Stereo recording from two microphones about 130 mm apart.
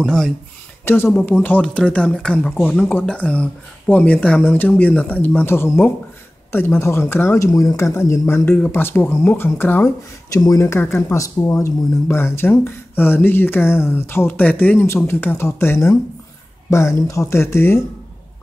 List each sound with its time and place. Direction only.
0.0 s speech: 5° left (ahead or behind)
0.8 s speech: 15° left (ahead or behind)